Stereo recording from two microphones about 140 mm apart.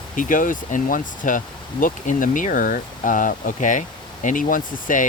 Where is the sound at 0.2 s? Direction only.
70° left (ahead or behind).